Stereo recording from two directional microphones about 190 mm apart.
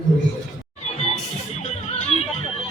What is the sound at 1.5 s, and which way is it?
Music, 35° left (ahead or behind).